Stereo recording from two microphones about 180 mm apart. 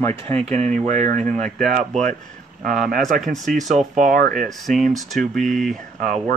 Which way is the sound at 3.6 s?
45° right (ahead or behind).